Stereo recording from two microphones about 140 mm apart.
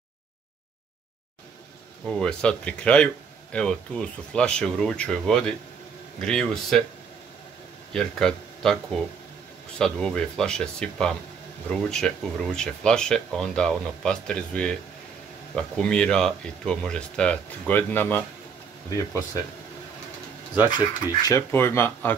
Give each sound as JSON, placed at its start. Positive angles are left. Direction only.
{"t": 2.0, "sound": "speech", "side_deg": 5}
{"t": 7.9, "sound": "speech", "side_deg": 5}
{"t": 20.7, "sound": "speech", "side_deg": 25}
{"t": 21.4, "sound": "speech", "side_deg": 15}